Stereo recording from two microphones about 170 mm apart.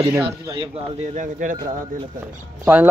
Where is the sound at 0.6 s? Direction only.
40° right (ahead or behind).